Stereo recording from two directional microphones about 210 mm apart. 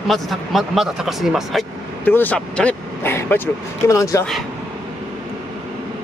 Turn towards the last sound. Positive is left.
turn(degrees=15)  # may be behind; listen again after turning